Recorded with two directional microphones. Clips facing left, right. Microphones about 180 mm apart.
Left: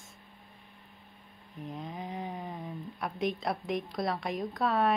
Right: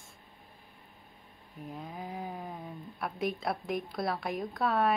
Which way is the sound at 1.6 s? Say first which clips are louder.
Left 2 dB; centre (ahead or behind).